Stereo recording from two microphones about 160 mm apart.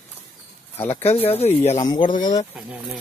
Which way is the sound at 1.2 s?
40° left (ahead or behind).